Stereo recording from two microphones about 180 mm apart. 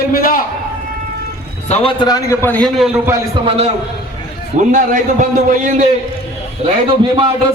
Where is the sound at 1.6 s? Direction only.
30° left (ahead or behind); by 2.7 s 10° left (ahead or behind).